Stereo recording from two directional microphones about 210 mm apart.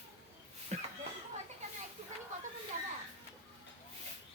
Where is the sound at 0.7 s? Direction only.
35° right (ahead or behind).